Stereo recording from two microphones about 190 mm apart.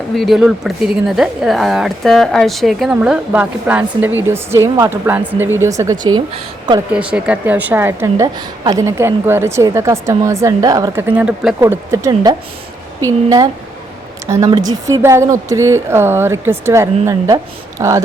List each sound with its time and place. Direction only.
0.2 s a woman's voice: centre (ahead or behind); by 6.8 s 25° right (ahead or behind)
6.9 s a woman's voice: 5° right (ahead or behind)